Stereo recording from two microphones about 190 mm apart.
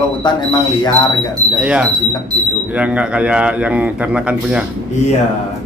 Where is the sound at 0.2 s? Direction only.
25° left (ahead or behind).